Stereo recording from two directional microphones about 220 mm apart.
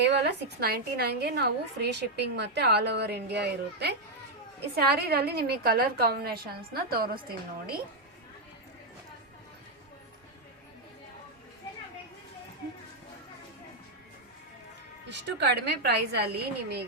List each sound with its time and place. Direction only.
0.0 s a woman's voice: 50° right (ahead or behind)
15.1 s a woman's voice: 50° right (ahead or behind)